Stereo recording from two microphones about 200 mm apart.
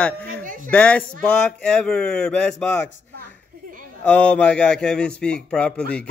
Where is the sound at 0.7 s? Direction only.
5° left (ahead or behind).